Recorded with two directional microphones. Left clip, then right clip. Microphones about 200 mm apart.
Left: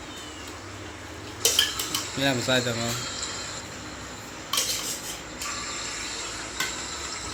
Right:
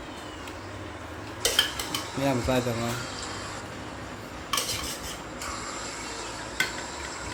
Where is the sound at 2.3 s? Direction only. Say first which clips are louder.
Left 2 dB; centre (ahead or behind).